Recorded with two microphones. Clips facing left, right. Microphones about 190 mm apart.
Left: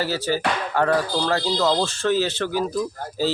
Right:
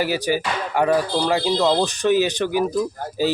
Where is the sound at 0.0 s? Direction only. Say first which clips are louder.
Right 2 dB; 15° right (ahead or behind).